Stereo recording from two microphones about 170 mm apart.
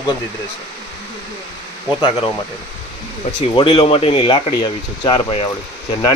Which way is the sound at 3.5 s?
30° left (ahead or behind).